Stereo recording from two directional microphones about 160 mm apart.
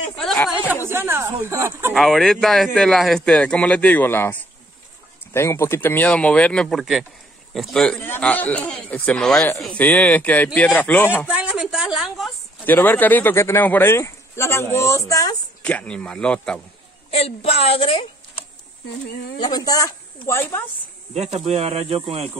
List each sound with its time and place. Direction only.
0.1 s speech: 5° left (ahead or behind)
0.8 s speech: 15° right (ahead or behind)
2.0 s a man's voice: centre (ahead or behind)
11.2 s a woman's voice: 5° right (ahead or behind)
12.6 s a man's voice: 10° left (ahead or behind)
15.6 s a man's voice: 10° left (ahead or behind)
17.1 s a woman's voice: 40° left (ahead or behind)
19.3 s a woman's voice: 25° left (ahead or behind)
21.1 s speech: 40° right (ahead or behind)